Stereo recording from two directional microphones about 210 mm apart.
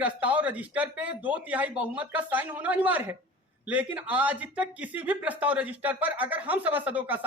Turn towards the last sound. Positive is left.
turn(degrees=-5)  # may be behind; listen again after turning